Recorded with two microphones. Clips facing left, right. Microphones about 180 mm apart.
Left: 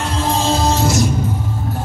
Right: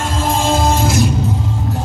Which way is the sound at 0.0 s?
45° right (ahead or behind).